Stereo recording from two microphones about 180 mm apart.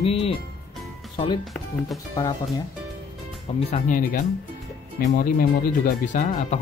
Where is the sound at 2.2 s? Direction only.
20° left (ahead or behind).